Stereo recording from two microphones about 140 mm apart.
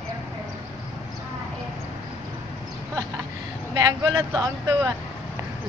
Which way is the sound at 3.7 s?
25° right (ahead or behind).